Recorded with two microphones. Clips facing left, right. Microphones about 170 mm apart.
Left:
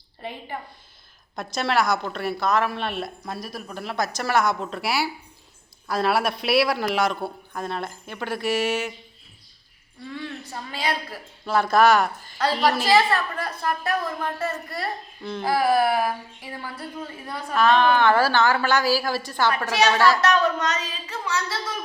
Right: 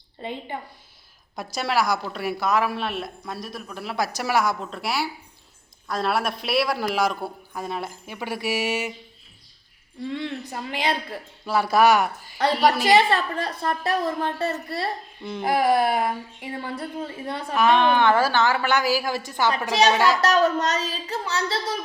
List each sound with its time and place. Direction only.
0.2 s a woman's voice: 20° right (ahead or behind)
1.5 s a woman's voice: 5° right (ahead or behind)
10.1 s a woman's voice: 20° right (ahead or behind)
12.9 s a woman's voice: 25° right (ahead or behind)
15.2 s a woman's voice: 15° right (ahead or behind)
20.2 s speech: 40° right (ahead or behind)